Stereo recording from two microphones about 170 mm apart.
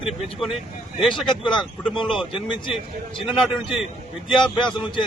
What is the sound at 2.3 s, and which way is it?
Speech, 30° left (ahead or behind).